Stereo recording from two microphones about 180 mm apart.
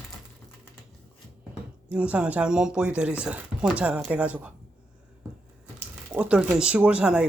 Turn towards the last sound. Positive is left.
turn(degrees=-5)  # may be behind; listen again after turning